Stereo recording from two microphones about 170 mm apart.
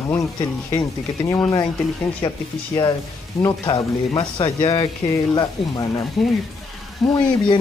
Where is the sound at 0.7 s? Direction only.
20° left (ahead or behind).